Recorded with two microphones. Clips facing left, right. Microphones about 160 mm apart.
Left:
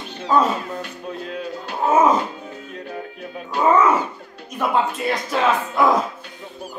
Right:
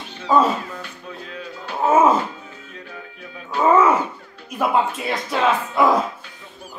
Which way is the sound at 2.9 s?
40° left (ahead or behind).